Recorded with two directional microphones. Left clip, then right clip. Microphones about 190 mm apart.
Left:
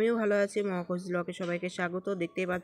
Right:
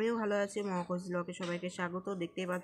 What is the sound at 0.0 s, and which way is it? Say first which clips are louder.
Speech: left 6 dB; 20° left (ahead or behind).